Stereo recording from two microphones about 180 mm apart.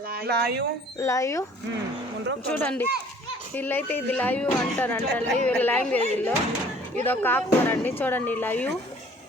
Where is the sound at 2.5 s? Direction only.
10° left (ahead or behind).